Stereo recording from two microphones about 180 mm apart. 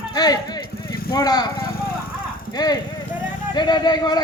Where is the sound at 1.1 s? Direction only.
20° left (ahead or behind).